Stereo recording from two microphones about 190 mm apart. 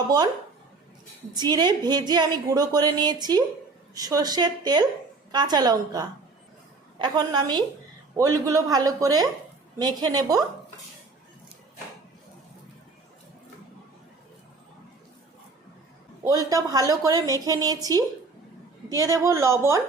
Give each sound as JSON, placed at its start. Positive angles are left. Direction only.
{"t": 1.3, "sound": "a woman's voice", "side_deg": -20}
{"t": 16.5, "sound": "a woman's voice", "side_deg": -20}